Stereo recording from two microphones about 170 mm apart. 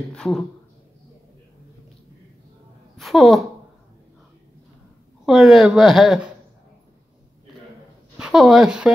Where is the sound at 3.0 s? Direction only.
Centre (ahead or behind).